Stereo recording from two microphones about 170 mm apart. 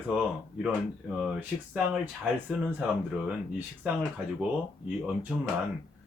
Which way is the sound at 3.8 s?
10° right (ahead or behind).